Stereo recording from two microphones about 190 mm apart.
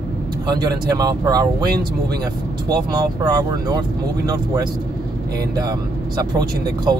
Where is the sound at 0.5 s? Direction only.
20° right (ahead or behind).